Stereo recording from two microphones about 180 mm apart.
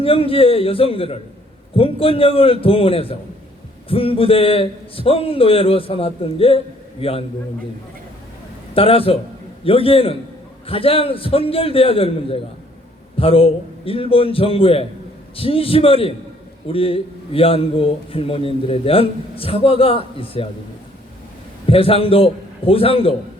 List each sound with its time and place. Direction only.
0.0 s a man's voice: 30° left (ahead or behind)
8.7 s a man's voice: 30° left (ahead or behind)
21.7 s a man's voice: 30° left (ahead or behind)